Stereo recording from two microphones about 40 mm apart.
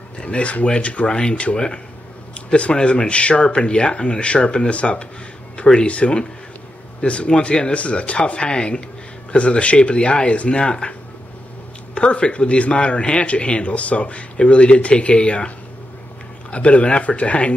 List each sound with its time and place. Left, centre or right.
0.2 s a man's voice: left